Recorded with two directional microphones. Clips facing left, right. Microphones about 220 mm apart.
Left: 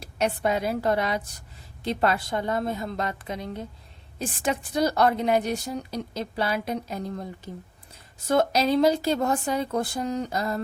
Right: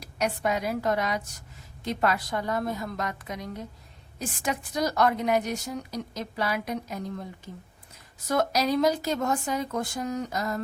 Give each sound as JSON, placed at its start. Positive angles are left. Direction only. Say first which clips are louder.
{"t": 0.0, "sound": "a woman's voice", "louder": "left 3 dB", "side_deg": 30}
{"t": 8.3, "sound": "a woman's voice", "louder": "left 3 dB", "side_deg": 25}